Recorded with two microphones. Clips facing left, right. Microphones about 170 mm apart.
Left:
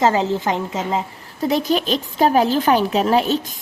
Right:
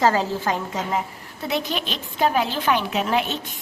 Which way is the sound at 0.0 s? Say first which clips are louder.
Left 3 dB; 20° left (ahead or behind).